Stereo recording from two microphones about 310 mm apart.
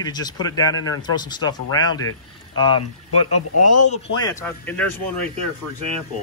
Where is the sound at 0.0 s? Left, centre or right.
Centre.